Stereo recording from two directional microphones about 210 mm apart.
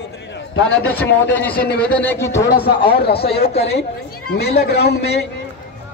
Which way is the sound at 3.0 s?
50° left (ahead or behind).